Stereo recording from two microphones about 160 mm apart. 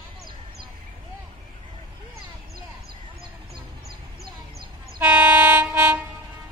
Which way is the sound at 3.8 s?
75° right (ahead or behind).